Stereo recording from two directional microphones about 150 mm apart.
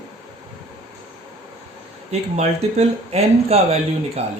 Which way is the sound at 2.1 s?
45° right (ahead or behind).